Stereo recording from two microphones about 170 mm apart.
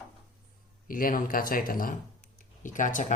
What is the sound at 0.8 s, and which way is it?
Speech, 55° left (ahead or behind).